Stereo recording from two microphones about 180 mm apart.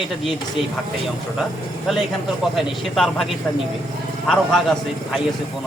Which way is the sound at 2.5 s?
Centre (ahead or behind).